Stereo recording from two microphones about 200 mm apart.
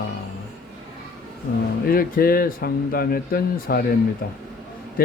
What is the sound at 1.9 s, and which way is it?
Speech, 45° left (ahead or behind).